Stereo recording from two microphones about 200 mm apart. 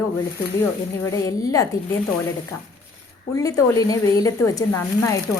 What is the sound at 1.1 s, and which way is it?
Speech, 15° left (ahead or behind).